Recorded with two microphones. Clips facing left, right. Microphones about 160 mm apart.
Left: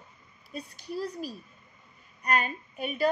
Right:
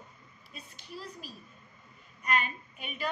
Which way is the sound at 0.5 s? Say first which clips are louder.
Left 10 dB; 40° left (ahead or behind).